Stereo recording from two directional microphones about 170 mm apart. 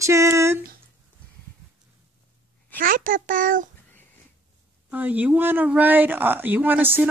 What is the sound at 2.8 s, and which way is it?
Speech, 55° right (ahead or behind).